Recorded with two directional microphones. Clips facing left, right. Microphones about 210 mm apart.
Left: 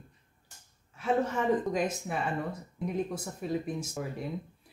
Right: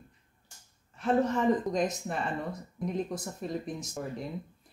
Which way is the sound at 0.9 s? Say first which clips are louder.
Right 2 dB; 5° left (ahead or behind).